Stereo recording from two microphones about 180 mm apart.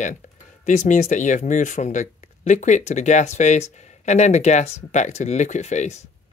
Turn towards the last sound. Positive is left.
turn(degrees=40)  # may be behind; listen again after turning